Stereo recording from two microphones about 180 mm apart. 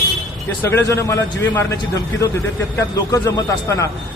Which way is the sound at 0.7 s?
15° left (ahead or behind).